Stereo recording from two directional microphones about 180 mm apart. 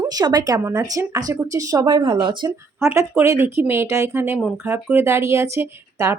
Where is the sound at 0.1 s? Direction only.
20° right (ahead or behind).